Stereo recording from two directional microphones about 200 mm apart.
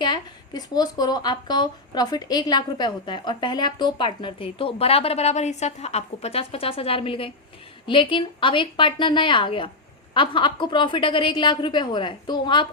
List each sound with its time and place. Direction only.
0.0 s speech: 20° left (ahead or behind)